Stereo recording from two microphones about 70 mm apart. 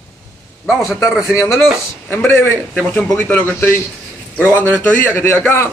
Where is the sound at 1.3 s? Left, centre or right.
Left.